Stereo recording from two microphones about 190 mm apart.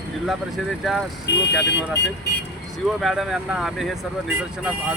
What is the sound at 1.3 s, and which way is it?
Speech, 65° left (ahead or behind).